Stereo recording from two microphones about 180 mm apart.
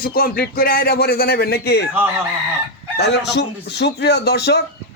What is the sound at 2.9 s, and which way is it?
Speech, 70° left (ahead or behind).